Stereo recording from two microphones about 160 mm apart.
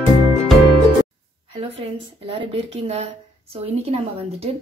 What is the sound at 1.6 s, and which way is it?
Speech, 35° right (ahead or behind).